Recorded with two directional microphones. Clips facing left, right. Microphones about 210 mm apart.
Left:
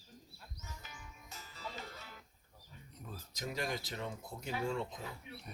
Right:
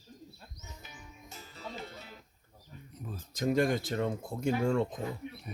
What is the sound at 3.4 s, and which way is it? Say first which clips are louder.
Speech: right 12 dB; 50° right (ahead or behind).